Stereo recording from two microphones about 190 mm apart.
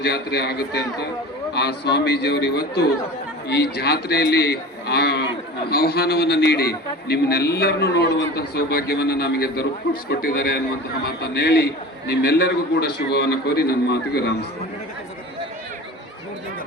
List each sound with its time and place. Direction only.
0.0 s a man's voice: 60° left (ahead or behind)